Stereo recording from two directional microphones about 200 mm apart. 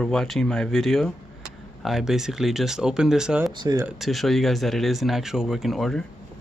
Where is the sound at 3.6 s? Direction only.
20° right (ahead or behind).